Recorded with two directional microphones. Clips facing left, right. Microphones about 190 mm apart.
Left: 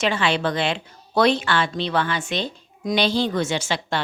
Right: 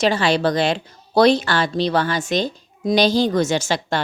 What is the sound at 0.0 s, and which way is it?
Speech, 40° right (ahead or behind).